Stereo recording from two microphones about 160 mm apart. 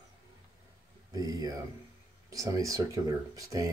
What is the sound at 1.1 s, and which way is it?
Speech, 25° right (ahead or behind).